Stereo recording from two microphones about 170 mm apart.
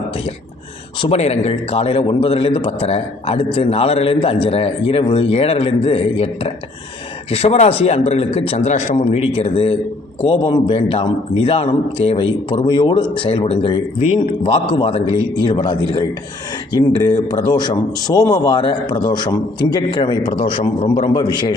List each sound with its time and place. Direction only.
1.0 s a man's voice: 35° left (ahead or behind); by 21.3 s 20° left (ahead or behind)